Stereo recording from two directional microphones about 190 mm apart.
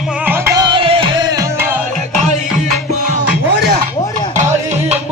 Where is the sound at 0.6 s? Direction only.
25° right (ahead or behind).